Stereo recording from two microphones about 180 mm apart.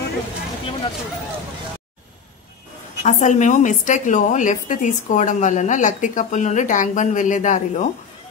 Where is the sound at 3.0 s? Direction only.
45° left (ahead or behind).